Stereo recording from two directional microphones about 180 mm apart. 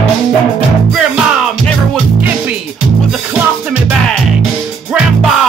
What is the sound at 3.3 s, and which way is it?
Music, 10° right (ahead or behind).